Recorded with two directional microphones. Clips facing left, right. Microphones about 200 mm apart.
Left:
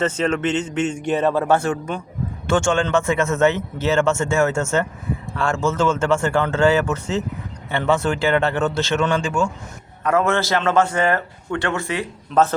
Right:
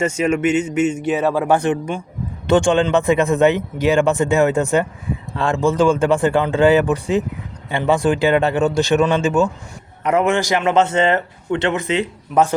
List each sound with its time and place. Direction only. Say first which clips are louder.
0.0 s a man's voice: right 3 dB; 10° right (ahead or behind)